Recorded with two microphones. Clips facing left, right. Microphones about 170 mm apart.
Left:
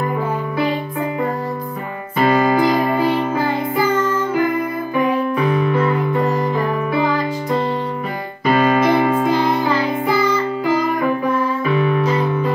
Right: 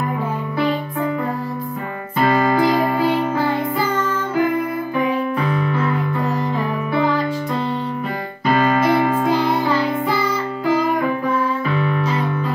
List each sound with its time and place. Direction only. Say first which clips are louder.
2.3 s music: left 2 dB; 15° left (ahead or behind)
9.1 s music: left 1 dB; 5° right (ahead or behind)